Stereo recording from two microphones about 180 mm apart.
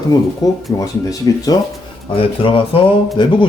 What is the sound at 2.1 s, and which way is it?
Speech, 30° left (ahead or behind).